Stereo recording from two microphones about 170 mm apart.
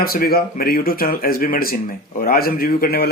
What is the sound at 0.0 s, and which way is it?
Speech, 60° left (ahead or behind).